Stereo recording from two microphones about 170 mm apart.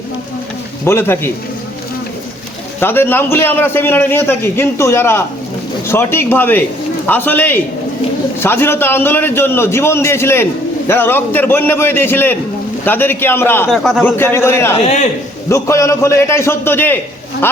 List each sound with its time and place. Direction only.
0.9 s a man's voice: 15° left (ahead or behind)
2.8 s a man's voice: 15° left (ahead or behind)
13.7 s a man's voice: centre (ahead or behind)
14.0 s a man's voice: 10° left (ahead or behind)